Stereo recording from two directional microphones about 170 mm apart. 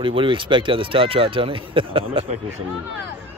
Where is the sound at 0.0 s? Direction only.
30° right (ahead or behind).